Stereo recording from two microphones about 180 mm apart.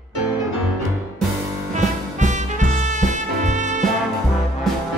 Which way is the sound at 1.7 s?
40° right (ahead or behind).